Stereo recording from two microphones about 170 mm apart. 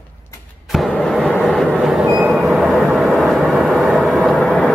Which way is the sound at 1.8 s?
5° right (ahead or behind).